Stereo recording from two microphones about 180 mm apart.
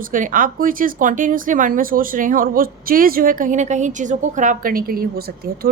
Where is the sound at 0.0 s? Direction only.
45° right (ahead or behind).